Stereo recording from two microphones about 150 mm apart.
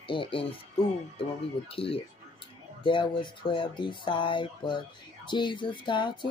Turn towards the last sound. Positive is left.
turn(degrees=30)  # may be behind; listen again after turning